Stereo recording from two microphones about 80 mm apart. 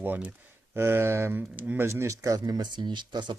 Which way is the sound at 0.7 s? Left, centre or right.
Right.